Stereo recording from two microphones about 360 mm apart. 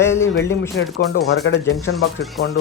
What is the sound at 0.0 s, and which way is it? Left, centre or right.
Speech, centre.